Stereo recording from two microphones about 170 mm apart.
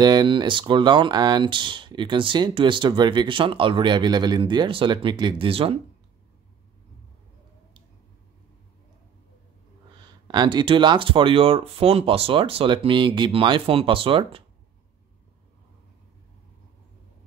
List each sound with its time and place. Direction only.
0.0 s speech: 25° right (ahead or behind)
10.2 s speech: 25° right (ahead or behind)